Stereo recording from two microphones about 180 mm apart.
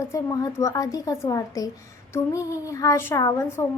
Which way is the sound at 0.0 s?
15° left (ahead or behind).